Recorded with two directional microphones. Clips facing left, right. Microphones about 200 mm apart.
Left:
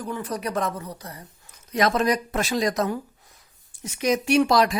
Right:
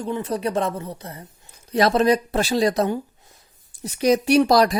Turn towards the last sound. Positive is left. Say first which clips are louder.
# right 3 dB
turn(degrees=-35)  # may be behind; listen again after turning